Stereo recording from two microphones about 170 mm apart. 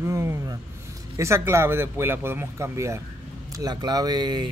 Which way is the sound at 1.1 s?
15° right (ahead or behind).